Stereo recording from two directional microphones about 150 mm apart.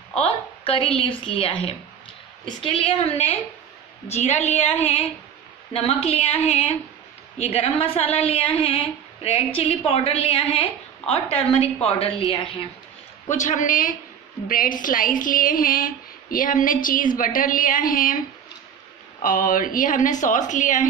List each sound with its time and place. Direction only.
0.2 s a woman's voice: 40° left (ahead or behind)
13.3 s speech: 55° left (ahead or behind)
19.2 s speech: 65° left (ahead or behind)